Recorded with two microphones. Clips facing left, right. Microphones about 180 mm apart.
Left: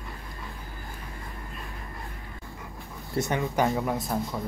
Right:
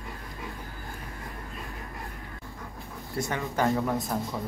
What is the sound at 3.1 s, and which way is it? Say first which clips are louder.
Speech: left 3 dB; 20° left (ahead or behind).